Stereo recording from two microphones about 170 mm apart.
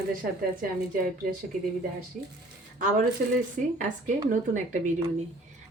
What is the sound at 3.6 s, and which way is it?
A woman's voice, 50° right (ahead or behind).